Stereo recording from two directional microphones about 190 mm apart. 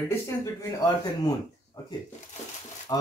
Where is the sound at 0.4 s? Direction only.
20° left (ahead or behind).